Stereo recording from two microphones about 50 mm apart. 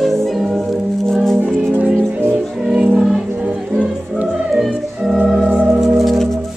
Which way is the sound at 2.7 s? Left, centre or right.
Right.